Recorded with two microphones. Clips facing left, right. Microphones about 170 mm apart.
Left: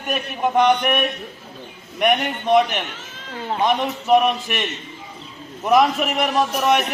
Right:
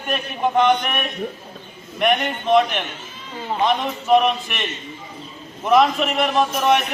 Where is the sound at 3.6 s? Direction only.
15° left (ahead or behind).